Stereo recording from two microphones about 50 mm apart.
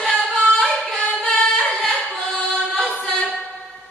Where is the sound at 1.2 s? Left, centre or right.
Centre.